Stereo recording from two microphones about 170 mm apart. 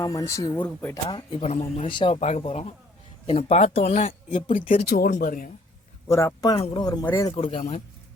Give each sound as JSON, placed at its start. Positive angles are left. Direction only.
{"t": 0.0, "sound": "speech", "side_deg": 20}
{"t": 1.4, "sound": "speech", "side_deg": 40}
{"t": 2.1, "sound": "speech", "side_deg": 40}
{"t": 4.8, "sound": "speech", "side_deg": 60}
{"t": 6.1, "sound": "speech", "side_deg": 20}
{"t": 7.3, "sound": "speech", "side_deg": 35}